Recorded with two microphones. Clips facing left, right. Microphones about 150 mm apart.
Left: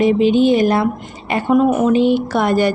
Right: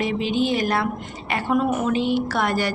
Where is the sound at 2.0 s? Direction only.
55° left (ahead or behind).